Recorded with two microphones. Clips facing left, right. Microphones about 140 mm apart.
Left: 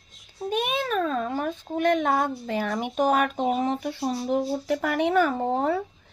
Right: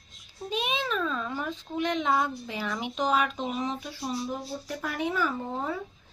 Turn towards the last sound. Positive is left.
turn(degrees=65)  # may be behind; listen again after turning